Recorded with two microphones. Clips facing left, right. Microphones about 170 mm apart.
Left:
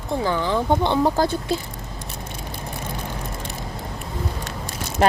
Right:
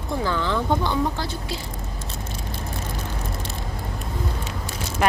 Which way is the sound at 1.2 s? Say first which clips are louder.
Left 10 dB; 40° left (ahead or behind).